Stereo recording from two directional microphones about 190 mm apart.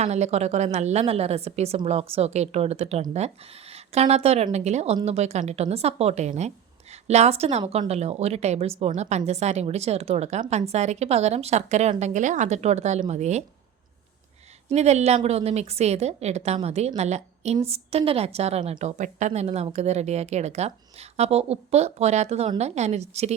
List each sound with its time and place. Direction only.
0.0 s a woman's voice: 35° right (ahead or behind)
14.7 s a woman's voice: 35° right (ahead or behind)